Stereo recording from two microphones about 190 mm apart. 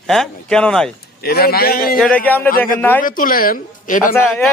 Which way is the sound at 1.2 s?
55° left (ahead or behind).